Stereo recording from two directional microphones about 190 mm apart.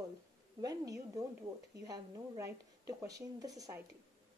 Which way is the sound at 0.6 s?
20° right (ahead or behind).